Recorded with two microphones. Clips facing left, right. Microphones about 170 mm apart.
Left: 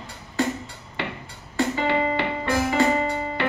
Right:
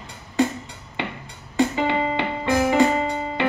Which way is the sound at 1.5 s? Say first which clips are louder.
Right 2 dB; 20° right (ahead or behind).